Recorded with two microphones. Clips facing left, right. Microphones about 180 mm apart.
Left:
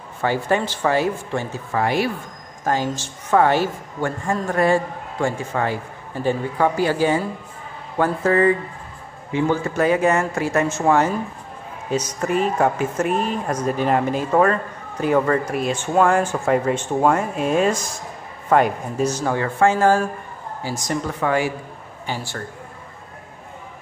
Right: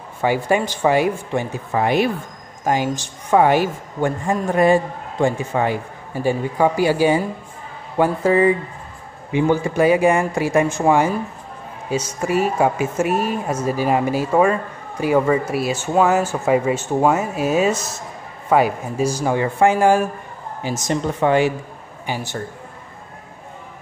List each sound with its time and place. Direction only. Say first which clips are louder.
0.2 s a man's voice: right 2 dB; 10° right (ahead or behind)